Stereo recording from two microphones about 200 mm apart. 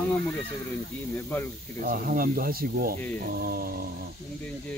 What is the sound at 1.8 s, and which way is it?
Speech, 45° right (ahead or behind).